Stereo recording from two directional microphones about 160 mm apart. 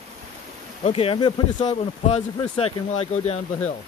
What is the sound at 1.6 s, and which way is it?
Speech, 45° left (ahead or behind).